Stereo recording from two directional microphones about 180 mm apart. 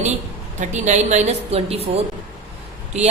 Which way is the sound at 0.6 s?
40° right (ahead or behind).